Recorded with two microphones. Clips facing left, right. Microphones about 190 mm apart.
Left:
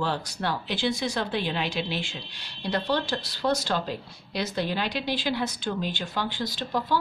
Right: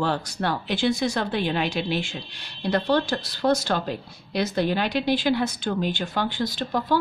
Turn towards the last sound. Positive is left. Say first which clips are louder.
# right 3 dB
turn(degrees=-50)  # may be behind; listen again after turning